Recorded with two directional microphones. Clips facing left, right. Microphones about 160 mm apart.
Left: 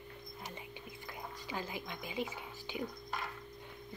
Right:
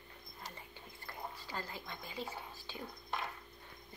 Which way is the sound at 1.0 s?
15° left (ahead or behind).